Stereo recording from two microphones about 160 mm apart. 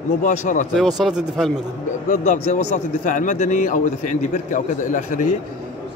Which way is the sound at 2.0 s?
50° left (ahead or behind).